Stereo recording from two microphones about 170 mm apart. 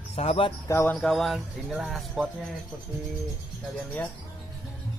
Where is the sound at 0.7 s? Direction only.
10° left (ahead or behind).